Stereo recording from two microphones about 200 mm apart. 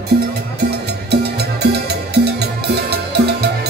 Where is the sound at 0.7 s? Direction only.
55° right (ahead or behind).